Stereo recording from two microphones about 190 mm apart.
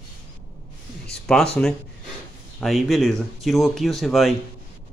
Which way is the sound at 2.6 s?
Centre (ahead or behind).